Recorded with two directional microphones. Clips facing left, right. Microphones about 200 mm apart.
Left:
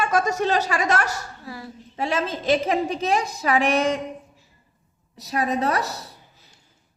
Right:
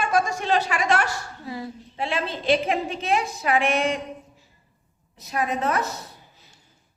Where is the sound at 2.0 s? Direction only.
40° left (ahead or behind).